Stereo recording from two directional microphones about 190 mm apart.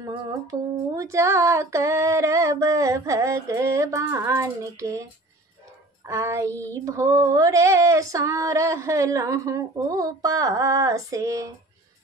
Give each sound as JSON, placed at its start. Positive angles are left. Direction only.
{"t": 0.0, "sound": "humming", "side_deg": -20}
{"t": 6.0, "sound": "humming", "side_deg": -15}